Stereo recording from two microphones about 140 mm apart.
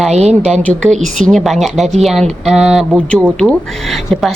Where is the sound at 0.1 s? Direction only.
50° right (ahead or behind).